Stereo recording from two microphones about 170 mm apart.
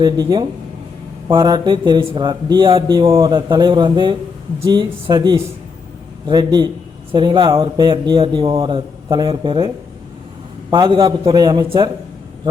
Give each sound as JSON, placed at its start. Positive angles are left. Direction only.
{"t": 0.0, "sound": "speech", "side_deg": -25}